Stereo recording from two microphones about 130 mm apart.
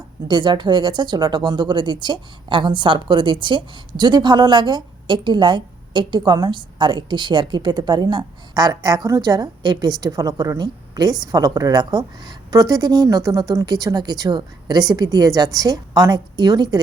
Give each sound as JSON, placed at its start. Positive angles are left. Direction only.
{"t": 0.3, "sound": "a woman's voice", "side_deg": -40}